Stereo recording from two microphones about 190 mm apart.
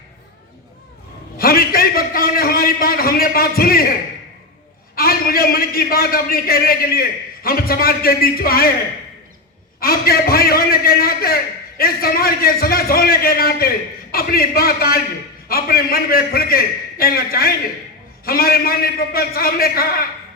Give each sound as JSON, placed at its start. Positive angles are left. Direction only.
{"t": 1.4, "sound": "a man's voice", "side_deg": 50}
{"t": 4.9, "sound": "a man's voice", "side_deg": 50}
{"t": 9.8, "sound": "a man's voice", "side_deg": 50}